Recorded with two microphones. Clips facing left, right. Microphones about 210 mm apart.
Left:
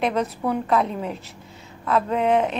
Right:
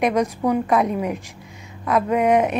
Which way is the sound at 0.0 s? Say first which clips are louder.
Right 4 dB; 15° right (ahead or behind).